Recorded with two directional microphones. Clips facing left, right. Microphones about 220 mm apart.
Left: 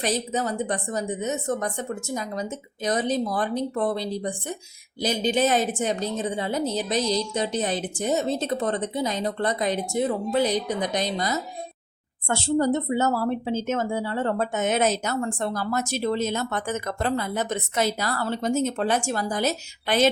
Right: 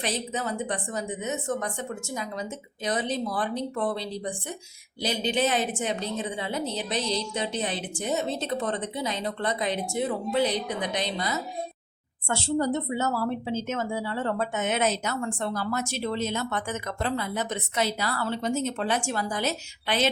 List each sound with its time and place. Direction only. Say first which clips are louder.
0.0 s a woman's voice: left 4 dB; 40° left (ahead or behind)